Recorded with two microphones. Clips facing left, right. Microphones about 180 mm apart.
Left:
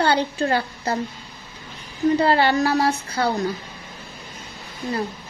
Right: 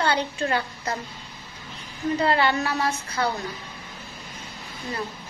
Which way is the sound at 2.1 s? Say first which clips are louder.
Left 3 dB; 30° left (ahead or behind).